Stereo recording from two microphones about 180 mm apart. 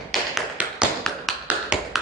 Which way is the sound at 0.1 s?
5° right (ahead or behind).